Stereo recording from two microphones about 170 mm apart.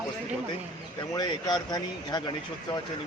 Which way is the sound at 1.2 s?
20° left (ahead or behind).